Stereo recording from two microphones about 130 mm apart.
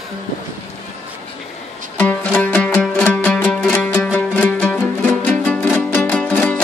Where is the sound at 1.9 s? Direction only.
15° left (ahead or behind).